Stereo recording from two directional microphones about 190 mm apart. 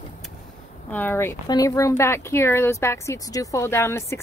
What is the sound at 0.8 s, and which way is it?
Speech, 10° left (ahead or behind).